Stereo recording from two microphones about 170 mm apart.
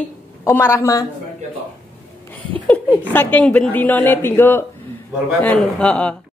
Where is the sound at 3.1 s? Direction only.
10° left (ahead or behind).